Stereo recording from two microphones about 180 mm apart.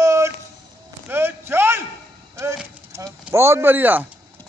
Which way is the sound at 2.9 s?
15° right (ahead or behind).